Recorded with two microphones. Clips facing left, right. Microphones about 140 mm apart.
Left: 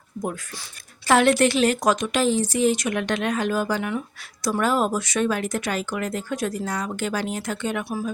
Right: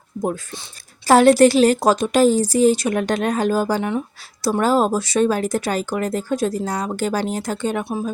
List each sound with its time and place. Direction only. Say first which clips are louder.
0.2 s speech: right 6 dB; 30° right (ahead or behind)